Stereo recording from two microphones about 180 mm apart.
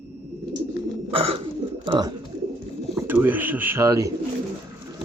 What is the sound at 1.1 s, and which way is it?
Bird, 30° right (ahead or behind).